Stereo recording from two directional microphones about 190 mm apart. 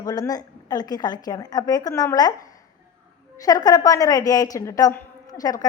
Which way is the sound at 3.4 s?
20° left (ahead or behind).